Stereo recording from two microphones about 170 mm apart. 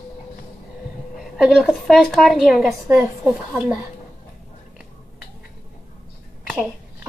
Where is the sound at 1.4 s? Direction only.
Centre (ahead or behind).